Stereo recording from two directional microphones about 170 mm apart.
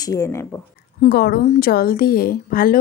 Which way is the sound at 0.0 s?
20° left (ahead or behind).